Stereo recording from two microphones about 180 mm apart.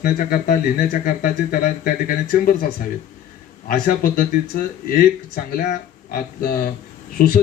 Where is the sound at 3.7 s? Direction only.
50° left (ahead or behind).